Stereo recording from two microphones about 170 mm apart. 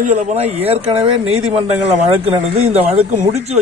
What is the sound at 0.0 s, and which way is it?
Speech, 45° right (ahead or behind).